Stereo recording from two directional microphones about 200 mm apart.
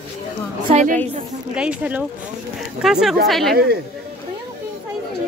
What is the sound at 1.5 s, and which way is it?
Speech, 5° right (ahead or behind).